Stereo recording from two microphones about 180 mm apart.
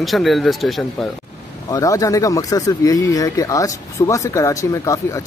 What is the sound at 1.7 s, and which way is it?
Speech, 20° left (ahead or behind).